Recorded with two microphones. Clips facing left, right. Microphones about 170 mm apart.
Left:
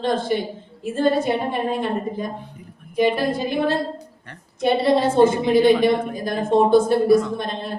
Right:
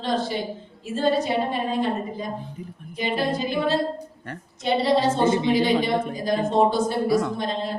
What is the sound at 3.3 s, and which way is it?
A woman's voice, 55° left (ahead or behind).